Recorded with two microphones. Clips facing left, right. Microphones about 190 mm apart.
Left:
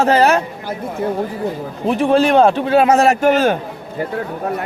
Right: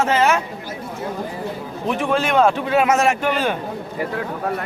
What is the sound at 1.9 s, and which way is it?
A man's voice, 35° left (ahead or behind).